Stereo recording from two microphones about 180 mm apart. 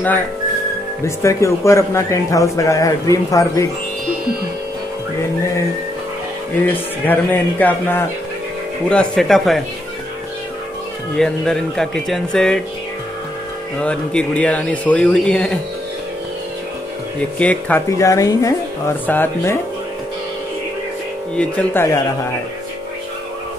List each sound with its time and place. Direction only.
1.0 s speech: 15° left (ahead or behind)
6.7 s speech: 10° left (ahead or behind)
11.1 s speech: 5° left (ahead or behind)
13.7 s speech: 5° left (ahead or behind)
17.4 s speech: 10° left (ahead or behind)
21.4 s speech: 15° left (ahead or behind)